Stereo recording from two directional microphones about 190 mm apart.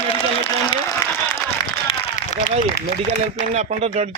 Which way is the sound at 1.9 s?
30° left (ahead or behind).